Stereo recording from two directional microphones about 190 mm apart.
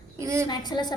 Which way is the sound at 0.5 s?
20° left (ahead or behind).